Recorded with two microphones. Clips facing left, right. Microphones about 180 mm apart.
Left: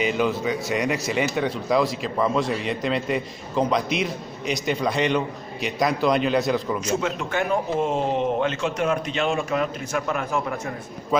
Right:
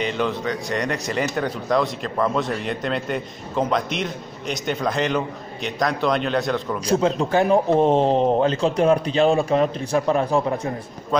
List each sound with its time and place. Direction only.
0.0 s speech: 5° left (ahead or behind)
6.9 s a man's voice: 35° right (ahead or behind)